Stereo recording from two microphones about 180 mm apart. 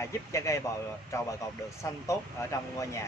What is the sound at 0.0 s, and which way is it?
Speech, 15° left (ahead or behind).